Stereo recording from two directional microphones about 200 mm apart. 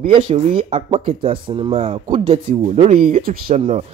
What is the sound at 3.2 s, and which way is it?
Speech, 50° right (ahead or behind).